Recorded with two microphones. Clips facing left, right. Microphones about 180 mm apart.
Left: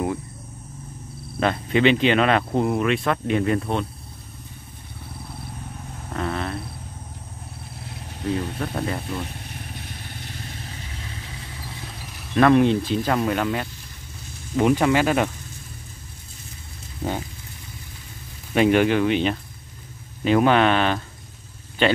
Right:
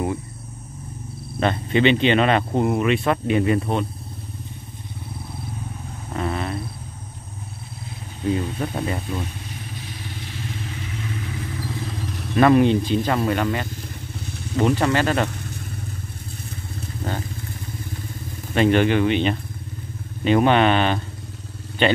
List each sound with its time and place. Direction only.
1.4 s speech: centre (ahead or behind)
6.1 s a sound: 5° right (ahead or behind)
8.3 s speech: 5° right (ahead or behind)
10.6 s vehicle: 35° left (ahead or behind)
12.2 s speech: 5° right (ahead or behind)
18.5 s speech: 5° left (ahead or behind)